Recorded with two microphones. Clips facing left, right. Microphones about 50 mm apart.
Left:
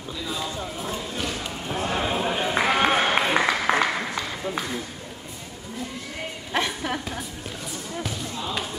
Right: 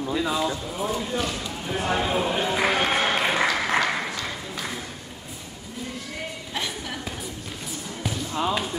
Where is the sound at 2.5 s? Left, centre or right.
Left.